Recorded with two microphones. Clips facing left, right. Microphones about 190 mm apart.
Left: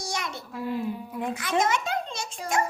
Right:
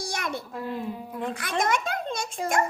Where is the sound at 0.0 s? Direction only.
55° right (ahead or behind).